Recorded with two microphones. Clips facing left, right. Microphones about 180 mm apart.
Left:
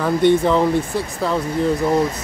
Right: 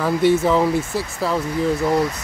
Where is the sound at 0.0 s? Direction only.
5° right (ahead or behind).